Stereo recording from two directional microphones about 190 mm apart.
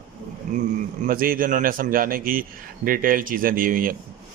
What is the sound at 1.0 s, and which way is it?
A man's voice, 45° right (ahead or behind).